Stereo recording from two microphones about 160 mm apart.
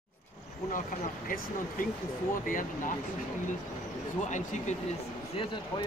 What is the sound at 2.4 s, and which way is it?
Speech, 55° left (ahead or behind).